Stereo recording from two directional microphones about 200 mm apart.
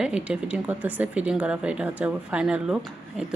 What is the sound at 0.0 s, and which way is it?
Speech, 5° right (ahead or behind).